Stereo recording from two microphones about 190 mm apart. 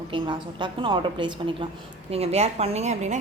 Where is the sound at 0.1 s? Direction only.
25° right (ahead or behind).